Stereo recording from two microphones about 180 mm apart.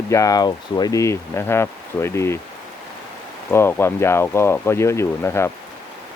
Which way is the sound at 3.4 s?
10° left (ahead or behind).